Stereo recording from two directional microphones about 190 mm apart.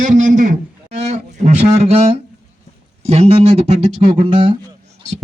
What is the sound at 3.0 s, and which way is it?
A man's voice, 35° right (ahead or behind).